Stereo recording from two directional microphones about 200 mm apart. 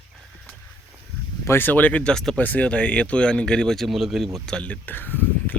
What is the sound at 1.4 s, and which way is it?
Speech, 10° left (ahead or behind).